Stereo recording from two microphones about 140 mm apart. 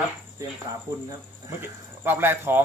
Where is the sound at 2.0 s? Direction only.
15° right (ahead or behind).